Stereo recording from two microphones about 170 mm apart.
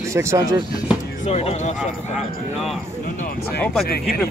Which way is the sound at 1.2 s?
35° left (ahead or behind).